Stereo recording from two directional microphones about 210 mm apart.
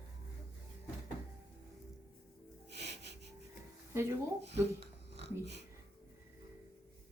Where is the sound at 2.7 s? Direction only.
55° right (ahead or behind).